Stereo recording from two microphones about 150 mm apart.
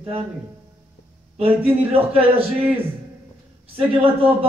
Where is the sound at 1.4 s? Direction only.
40° right (ahead or behind).